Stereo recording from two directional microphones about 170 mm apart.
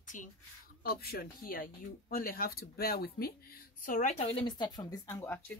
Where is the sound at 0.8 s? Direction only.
65° left (ahead or behind).